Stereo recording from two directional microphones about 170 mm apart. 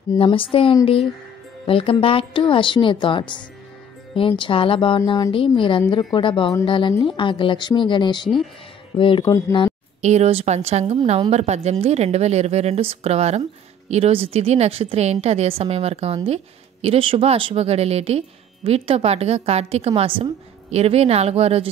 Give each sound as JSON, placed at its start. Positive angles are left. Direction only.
{"t": 0.2, "sound": "speech", "side_deg": 30}
{"t": 10.0, "sound": "speech", "side_deg": -40}